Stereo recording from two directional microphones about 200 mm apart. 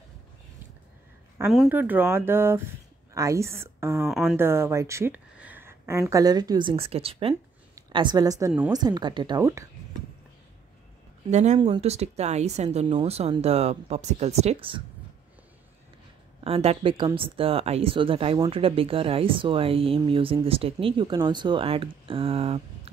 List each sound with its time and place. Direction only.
1.5 s speech: 5° right (ahead or behind)
4.0 s speech: centre (ahead or behind)
4.4 s a woman's voice: 10° right (ahead or behind)
11.2 s speech: 35° right (ahead or behind)
16.4 s speech: 30° right (ahead or behind)